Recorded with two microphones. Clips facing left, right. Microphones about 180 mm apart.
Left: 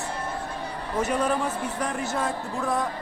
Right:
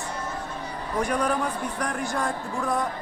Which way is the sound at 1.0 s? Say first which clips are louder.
Even; 5° left (ahead or behind).